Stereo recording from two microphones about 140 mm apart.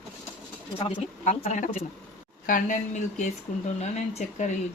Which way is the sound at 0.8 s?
50° left (ahead or behind).